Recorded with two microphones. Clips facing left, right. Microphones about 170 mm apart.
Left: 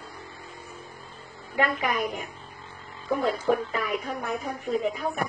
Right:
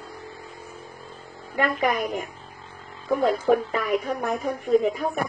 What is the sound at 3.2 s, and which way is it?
Speech, 45° right (ahead or behind).